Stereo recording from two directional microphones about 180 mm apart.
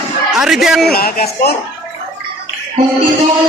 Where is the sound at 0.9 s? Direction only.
55° left (ahead or behind).